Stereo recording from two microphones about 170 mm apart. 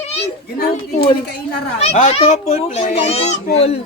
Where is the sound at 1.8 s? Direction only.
35° left (ahead or behind).